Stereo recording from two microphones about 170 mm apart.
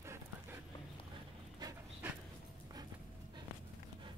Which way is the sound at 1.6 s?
25° right (ahead or behind).